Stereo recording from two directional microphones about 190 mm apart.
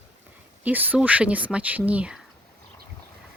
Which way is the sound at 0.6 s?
10° right (ahead or behind).